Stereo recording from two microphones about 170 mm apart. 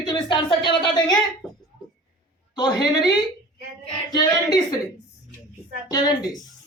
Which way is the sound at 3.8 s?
25° left (ahead or behind).